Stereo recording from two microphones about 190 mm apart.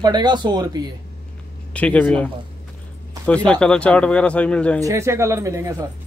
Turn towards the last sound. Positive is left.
turn(degrees=-15)  # may be behind; listen again after turning